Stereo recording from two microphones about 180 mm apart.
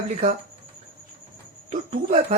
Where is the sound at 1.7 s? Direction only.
40° right (ahead or behind).